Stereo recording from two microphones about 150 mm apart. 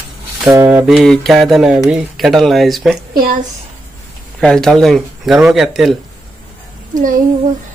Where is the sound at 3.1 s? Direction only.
75° right (ahead or behind).